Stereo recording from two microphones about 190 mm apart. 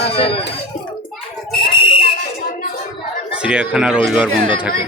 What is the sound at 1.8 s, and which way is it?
Fire alarm, 25° left (ahead or behind).